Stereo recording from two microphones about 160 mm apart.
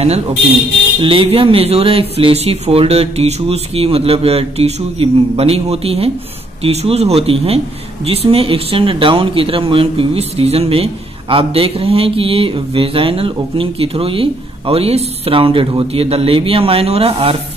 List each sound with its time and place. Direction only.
1.0 s speech: 35° right (ahead or behind)